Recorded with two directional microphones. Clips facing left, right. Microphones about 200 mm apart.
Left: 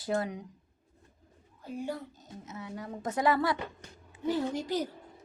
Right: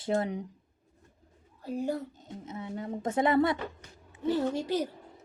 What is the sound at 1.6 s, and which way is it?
Speech, 40° right (ahead or behind).